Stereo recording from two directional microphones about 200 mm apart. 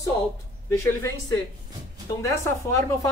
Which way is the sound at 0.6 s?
15° left (ahead or behind).